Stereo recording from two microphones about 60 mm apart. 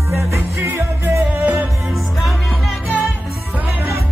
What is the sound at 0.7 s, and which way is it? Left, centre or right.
Music, right.